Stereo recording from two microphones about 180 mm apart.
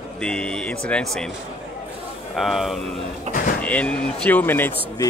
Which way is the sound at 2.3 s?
Centre (ahead or behind).